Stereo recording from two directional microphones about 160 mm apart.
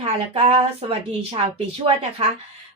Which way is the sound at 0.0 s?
40° right (ahead or behind).